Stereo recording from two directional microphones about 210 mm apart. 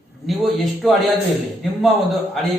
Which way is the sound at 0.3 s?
Centre (ahead or behind).